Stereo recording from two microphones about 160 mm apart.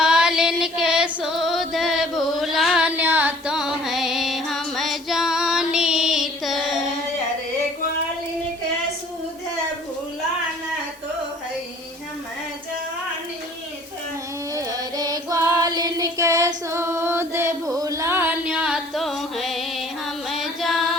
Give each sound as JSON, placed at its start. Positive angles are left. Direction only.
{"t": 0.0, "sound": "music", "side_deg": -5}
{"t": 14.5, "sound": "music", "side_deg": -25}